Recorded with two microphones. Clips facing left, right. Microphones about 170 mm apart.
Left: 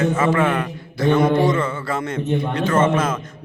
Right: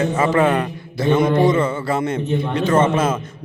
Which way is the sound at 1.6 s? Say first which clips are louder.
Right 4 dB; 20° right (ahead or behind).